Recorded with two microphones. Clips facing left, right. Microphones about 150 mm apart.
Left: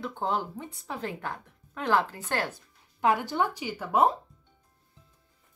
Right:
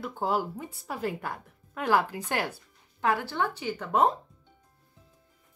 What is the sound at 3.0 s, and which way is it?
A woman's voice, 15° left (ahead or behind).